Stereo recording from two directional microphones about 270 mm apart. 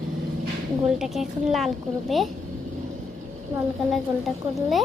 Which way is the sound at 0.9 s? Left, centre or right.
Centre.